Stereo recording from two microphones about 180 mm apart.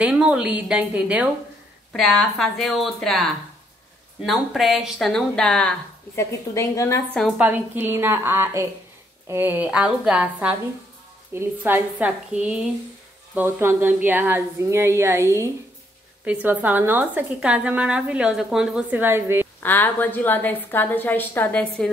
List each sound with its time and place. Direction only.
0.0 s a woman's voice: 5° right (ahead or behind)
4.3 s a woman's voice: centre (ahead or behind)
6.5 s a woman's voice: 15° left (ahead or behind)
7.2 s a woman's voice: centre (ahead or behind)
7.4 s a woman's voice: 10° right (ahead or behind)
19.6 s a woman's voice: 10° left (ahead or behind)